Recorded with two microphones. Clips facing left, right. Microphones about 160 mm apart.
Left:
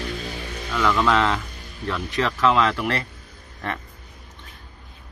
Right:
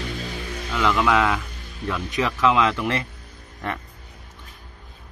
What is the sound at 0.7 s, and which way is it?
Speech, 10° right (ahead or behind).